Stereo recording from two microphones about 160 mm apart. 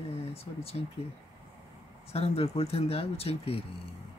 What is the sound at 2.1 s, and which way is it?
Speech, 40° left (ahead or behind).